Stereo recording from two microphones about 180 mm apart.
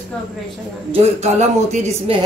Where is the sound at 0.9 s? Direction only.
35° right (ahead or behind).